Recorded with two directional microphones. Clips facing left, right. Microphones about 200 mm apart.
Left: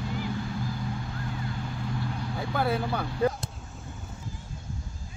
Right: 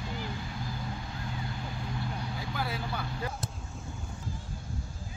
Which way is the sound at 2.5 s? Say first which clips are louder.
Left 9 dB; 55° left (ahead or behind).